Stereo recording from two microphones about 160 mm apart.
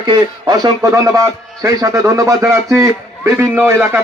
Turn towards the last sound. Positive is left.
turn(degrees=-15)  # may be behind; listen again after turning